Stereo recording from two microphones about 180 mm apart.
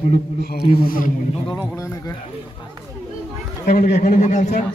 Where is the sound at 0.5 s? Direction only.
50° left (ahead or behind).